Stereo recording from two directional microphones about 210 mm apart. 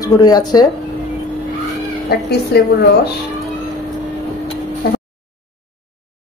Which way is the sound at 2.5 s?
50° left (ahead or behind).